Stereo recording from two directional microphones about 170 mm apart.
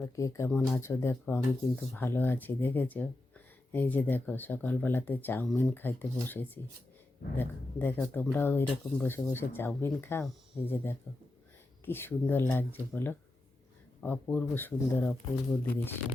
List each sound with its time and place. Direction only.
0.2 s speech: 15° left (ahead or behind)